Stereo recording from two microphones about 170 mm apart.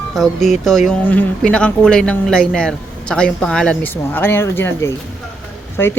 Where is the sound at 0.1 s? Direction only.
Centre (ahead or behind).